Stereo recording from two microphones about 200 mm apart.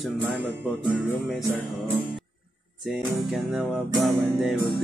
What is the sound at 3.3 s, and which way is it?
Music, centre (ahead or behind).